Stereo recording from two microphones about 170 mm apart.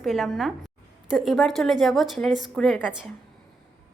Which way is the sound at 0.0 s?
Centre (ahead or behind).